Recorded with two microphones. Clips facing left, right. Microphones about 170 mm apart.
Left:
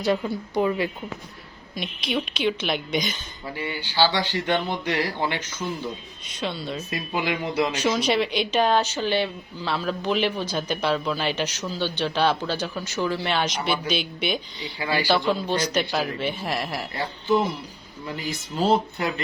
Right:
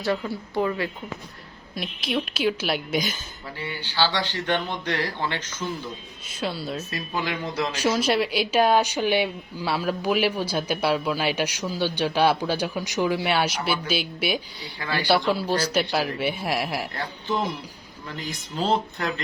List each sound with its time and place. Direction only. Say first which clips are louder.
0.0 s speech: left 2 dB; 15° left (ahead or behind)
1.7 s a woman's voice: even; centre (ahead or behind)
3.6 s speech: left 3 dB; 15° left (ahead or behind)
6.2 s a woman's voice: even; 5° right (ahead or behind)
6.9 s speech: left 5 dB; 15° left (ahead or behind)
7.7 s speech: even; 10° right (ahead or behind)
14.8 s speech: left 3 dB; 10° left (ahead or behind)
15.3 s speech: even; 10° right (ahead or behind)
16.9 s speech: left 5 dB; 10° left (ahead or behind)